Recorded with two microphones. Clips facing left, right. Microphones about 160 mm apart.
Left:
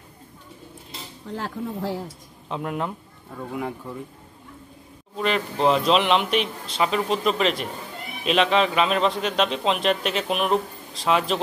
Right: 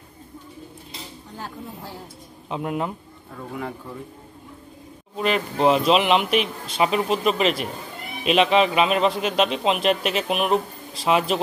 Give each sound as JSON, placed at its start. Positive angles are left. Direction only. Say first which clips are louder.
{"t": 1.3, "sound": "speech", "louder": "left 7 dB", "side_deg": 90}
{"t": 2.5, "sound": "speech", "louder": "right 2 dB", "side_deg": -5}
{"t": 5.1, "sound": "a man's voice", "louder": "right 1 dB", "side_deg": -5}